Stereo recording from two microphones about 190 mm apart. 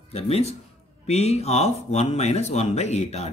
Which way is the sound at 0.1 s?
35° left (ahead or behind).